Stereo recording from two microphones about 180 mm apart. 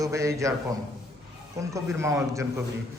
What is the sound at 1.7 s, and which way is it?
Speech, 15° right (ahead or behind).